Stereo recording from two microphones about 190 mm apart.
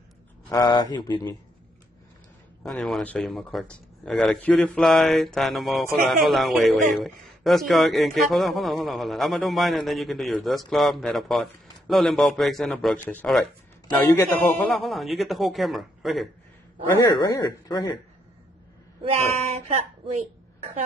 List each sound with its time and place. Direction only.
0.5 s a man's voice: 20° left (ahead or behind)
2.6 s a man's voice: centre (ahead or behind)
16.9 s a man's voice: 20° left (ahead or behind)
19.0 s speech: 35° right (ahead or behind)